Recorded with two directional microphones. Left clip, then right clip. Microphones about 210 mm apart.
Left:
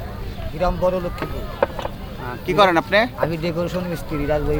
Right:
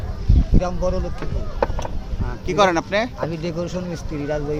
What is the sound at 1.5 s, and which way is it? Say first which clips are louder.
Vehicle: left 2 dB; 45° right (ahead or behind).